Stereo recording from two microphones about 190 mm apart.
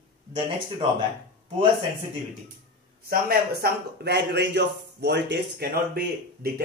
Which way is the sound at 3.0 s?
50° right (ahead or behind).